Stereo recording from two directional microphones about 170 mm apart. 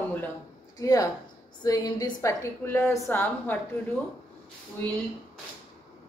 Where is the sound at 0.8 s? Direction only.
20° left (ahead or behind).